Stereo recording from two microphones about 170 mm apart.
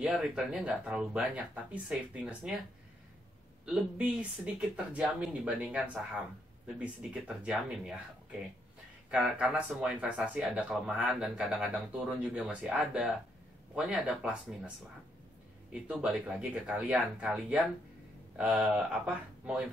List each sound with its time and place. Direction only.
0.0 s speech: 5° right (ahead or behind)
3.6 s speech: 10° right (ahead or behind)
15.7 s speech: 5° right (ahead or behind)